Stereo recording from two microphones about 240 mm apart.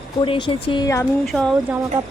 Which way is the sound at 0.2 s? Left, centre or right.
Centre.